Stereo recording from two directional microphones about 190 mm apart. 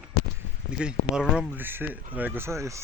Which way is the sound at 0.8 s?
5° right (ahead or behind).